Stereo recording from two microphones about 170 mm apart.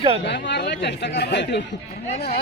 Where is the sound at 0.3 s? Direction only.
90° left.